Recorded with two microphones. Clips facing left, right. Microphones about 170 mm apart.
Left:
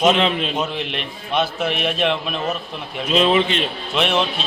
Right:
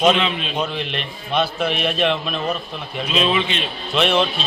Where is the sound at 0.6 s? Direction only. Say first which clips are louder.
Even; 10° left (ahead or behind).